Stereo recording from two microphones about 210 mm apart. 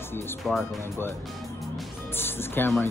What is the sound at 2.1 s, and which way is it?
Speech, 10° left (ahead or behind).